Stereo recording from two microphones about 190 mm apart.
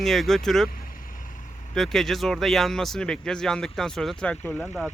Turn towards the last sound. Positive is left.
turn(degrees=0)  # may be behind; listen again after turning